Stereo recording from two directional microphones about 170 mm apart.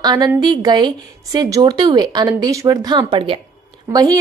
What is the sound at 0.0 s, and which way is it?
Speech, 25° right (ahead or behind).